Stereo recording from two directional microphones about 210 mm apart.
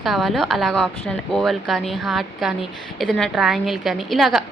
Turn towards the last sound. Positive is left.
turn(degrees=0)  # may be behind; listen again after turning